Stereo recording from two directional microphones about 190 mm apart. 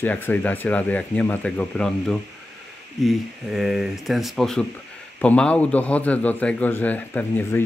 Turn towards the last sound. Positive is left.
turn(degrees=10)  # may be behind; listen again after turning